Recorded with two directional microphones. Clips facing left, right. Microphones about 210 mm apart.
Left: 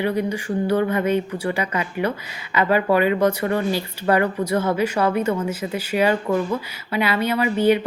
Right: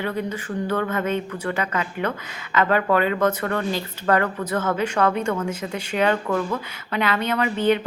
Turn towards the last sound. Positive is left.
turn(degrees=10)  # may be behind; listen again after turning